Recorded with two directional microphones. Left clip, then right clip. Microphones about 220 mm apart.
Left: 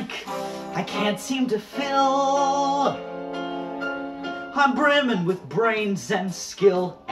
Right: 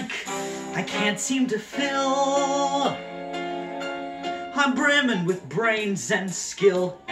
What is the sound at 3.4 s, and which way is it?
Music, 40° right (ahead or behind).